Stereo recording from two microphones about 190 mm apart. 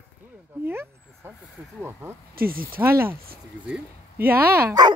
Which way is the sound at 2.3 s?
50° right (ahead or behind).